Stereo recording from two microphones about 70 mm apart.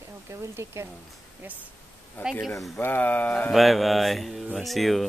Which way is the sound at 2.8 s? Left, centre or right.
Left.